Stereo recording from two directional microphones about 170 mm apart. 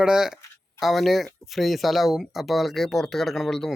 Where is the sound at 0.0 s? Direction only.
5° right (ahead or behind).